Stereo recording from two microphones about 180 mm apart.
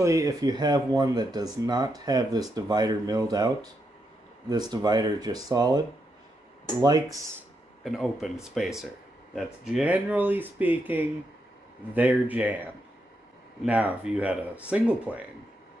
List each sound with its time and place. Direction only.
0.0 s speech: 15° right (ahead or behind)
7.8 s speech: centre (ahead or behind)